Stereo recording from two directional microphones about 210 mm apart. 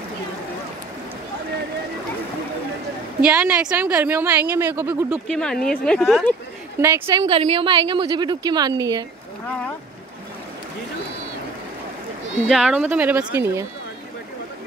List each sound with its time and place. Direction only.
3.3 s a woman's voice: 5° right (ahead or behind)
5.3 s speech: 5° left (ahead or behind)
6.8 s a woman's voice: 10° right (ahead or behind)
7.2 s a woman's voice: 25° right (ahead or behind)
12.4 s a woman's voice: centre (ahead or behind)